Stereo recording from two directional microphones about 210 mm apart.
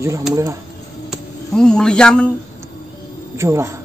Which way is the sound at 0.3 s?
15° right (ahead or behind).